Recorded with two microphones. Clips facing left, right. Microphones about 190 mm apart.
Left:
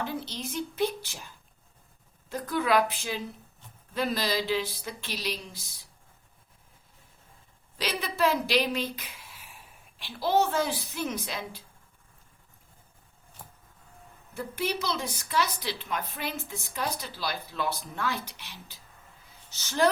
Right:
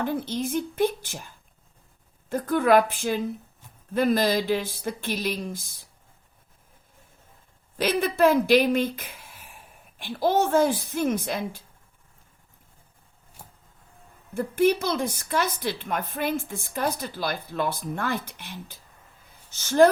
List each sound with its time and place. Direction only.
0.0 s a woman's voice: 50° right (ahead or behind)
2.3 s a woman's voice: 50° right (ahead or behind)
7.8 s a woman's voice: 50° right (ahead or behind)
14.3 s a woman's voice: 50° right (ahead or behind)